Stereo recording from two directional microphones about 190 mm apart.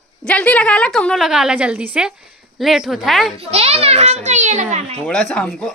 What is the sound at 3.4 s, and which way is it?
A child's voice, 35° right (ahead or behind).